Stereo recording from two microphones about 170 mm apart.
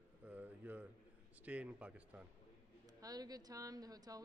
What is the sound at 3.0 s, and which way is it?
A woman's voice, 20° right (ahead or behind).